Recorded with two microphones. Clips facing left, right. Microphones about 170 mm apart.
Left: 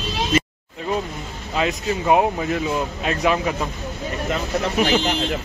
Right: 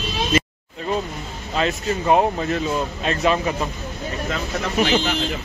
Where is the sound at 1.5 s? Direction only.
10° left (ahead or behind).